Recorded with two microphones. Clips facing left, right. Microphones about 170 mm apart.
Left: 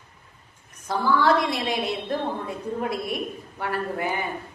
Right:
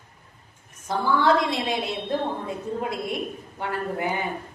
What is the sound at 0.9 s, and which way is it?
A woman's voice, 20° right (ahead or behind).